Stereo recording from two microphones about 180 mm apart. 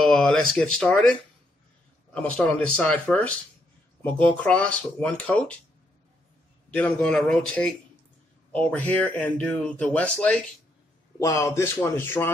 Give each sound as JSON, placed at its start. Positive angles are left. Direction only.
{"t": 0.0, "sound": "speech", "side_deg": 5}
{"t": 2.1, "sound": "speech", "side_deg": 5}
{"t": 6.7, "sound": "speech", "side_deg": 5}